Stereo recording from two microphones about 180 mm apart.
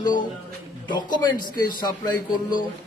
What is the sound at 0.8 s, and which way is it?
A man's voice, 25° left (ahead or behind).